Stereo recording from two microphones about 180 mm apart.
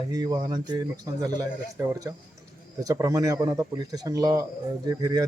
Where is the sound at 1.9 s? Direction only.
15° right (ahead or behind).